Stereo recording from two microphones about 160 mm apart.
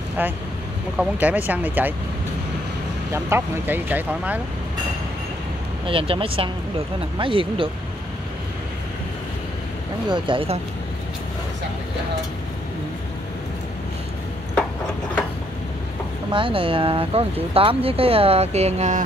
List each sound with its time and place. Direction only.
0.2 s speech: 10° right (ahead or behind)
3.1 s speech: 15° right (ahead or behind)
5.9 s speech: 35° right (ahead or behind)
10.0 s speech: 30° right (ahead or behind)
16.3 s speech: 30° right (ahead or behind)